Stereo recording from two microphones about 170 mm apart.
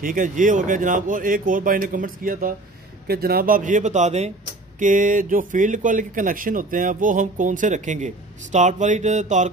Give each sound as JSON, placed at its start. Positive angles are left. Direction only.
{"t": 0.0, "sound": "speech", "side_deg": -55}